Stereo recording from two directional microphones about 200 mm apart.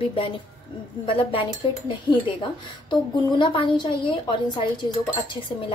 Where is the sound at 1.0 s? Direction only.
25° left (ahead or behind).